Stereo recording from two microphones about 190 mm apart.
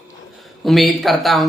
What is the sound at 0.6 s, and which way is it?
Speech, centre (ahead or behind).